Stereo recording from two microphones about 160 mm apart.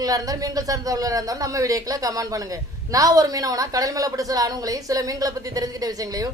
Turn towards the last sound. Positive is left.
turn(degrees=-20)  # may be behind; listen again after turning